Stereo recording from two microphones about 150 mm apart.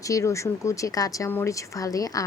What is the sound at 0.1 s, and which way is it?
Speech, 20° left (ahead or behind).